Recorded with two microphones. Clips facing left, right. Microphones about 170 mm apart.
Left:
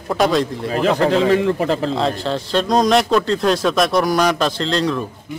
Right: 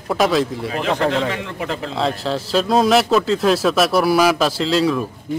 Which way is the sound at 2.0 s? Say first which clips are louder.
Left 1 dB; centre (ahead or behind).